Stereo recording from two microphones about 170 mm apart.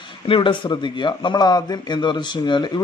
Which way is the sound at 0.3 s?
30° left (ahead or behind).